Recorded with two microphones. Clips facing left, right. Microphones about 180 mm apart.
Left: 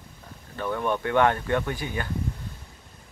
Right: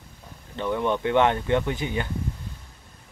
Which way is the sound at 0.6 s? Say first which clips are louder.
Right 2 dB; 20° right (ahead or behind).